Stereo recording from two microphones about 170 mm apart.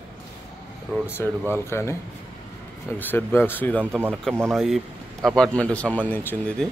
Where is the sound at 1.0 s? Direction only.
15° left (ahead or behind).